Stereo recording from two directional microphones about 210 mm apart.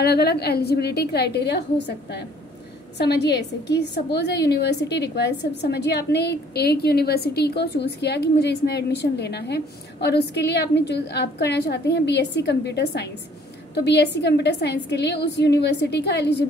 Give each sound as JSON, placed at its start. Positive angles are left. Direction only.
{"t": 0.0, "sound": "a woman's voice", "side_deg": 50}
{"t": 3.0, "sound": "a woman's voice", "side_deg": 55}